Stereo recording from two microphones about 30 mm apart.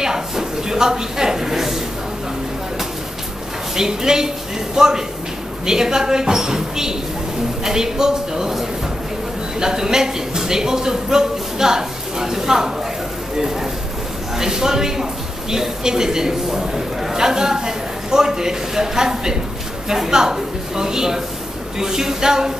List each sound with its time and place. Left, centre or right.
0.0 s a sound: centre
3.7 s a man's voice: centre
9.6 s a man's voice: right
14.3 s a man's voice: centre